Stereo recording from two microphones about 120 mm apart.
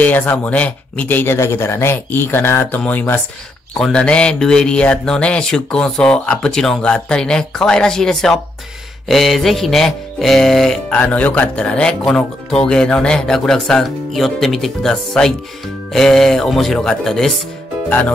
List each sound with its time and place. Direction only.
0.0 s speech: 15° left (ahead or behind)
9.1 s music: centre (ahead or behind)
17.8 s speech: 15° left (ahead or behind)